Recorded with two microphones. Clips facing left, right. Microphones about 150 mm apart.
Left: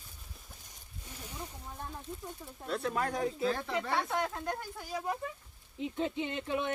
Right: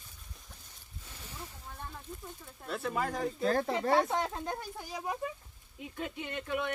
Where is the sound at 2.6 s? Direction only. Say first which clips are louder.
Left 1 dB; centre (ahead or behind).